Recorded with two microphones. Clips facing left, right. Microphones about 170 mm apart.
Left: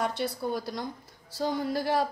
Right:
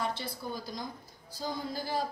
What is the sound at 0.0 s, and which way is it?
A woman's voice, 75° left (ahead or behind).